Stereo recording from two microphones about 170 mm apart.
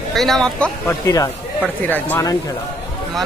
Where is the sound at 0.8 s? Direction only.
20° left (ahead or behind).